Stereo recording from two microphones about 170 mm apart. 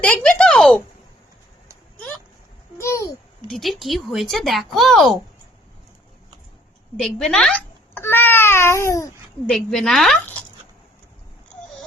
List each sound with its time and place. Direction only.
0.0 s speech: 5° left (ahead or behind)
2.7 s babbling: 15° left (ahead or behind)
3.4 s speech: centre (ahead or behind)
6.9 s a child's voice: centre (ahead or behind); by 9.1 s 20° left (ahead or behind)
9.5 s speech: centre (ahead or behind)